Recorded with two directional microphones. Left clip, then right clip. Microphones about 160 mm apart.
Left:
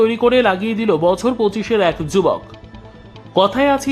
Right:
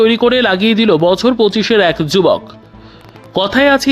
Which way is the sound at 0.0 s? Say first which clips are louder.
Right 3 dB; 20° right (ahead or behind).